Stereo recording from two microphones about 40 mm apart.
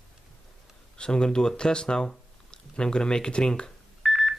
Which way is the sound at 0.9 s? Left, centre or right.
Left.